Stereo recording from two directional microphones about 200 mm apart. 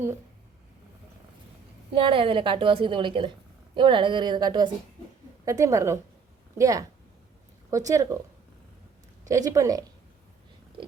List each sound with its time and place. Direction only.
1.9 s a woman's voice: 25° right (ahead or behind)
9.3 s speech: 15° right (ahead or behind)